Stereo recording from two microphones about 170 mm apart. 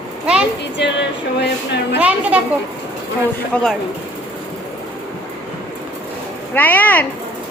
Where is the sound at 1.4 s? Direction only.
85° left.